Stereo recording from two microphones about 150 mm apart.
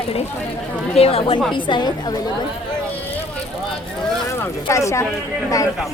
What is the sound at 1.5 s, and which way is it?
Speech, 30° left (ahead or behind).